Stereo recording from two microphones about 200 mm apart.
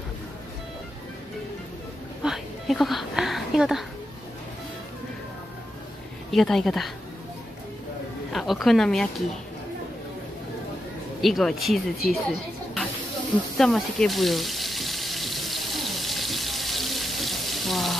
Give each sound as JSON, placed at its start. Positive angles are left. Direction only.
{"t": 2.2, "sound": "a sound", "side_deg": 0}
{"t": 6.3, "sound": "speech", "side_deg": 0}
{"t": 8.3, "sound": "speech", "side_deg": 0}
{"t": 11.1, "sound": "speech", "side_deg": 0}
{"t": 13.6, "sound": "water", "side_deg": 0}